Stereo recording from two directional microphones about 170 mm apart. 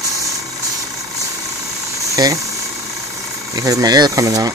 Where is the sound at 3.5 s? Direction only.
20° right (ahead or behind).